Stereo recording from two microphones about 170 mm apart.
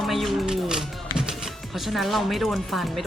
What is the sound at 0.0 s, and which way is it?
Music, centre (ahead or behind).